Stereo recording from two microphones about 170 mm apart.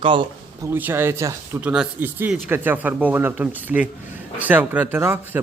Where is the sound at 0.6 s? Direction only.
15° right (ahead or behind).